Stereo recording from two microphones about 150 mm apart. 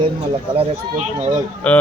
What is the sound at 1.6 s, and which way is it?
Speech, 10° left (ahead or behind).